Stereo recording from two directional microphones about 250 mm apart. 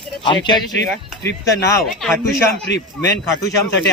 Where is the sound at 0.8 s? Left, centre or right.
Left.